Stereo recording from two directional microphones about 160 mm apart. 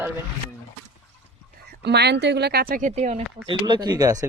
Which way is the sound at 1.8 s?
90° right.